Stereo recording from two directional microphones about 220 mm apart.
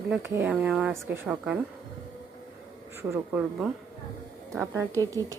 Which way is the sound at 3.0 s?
10° right (ahead or behind).